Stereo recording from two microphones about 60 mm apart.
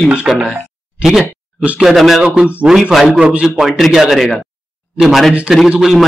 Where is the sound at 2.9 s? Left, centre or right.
Centre.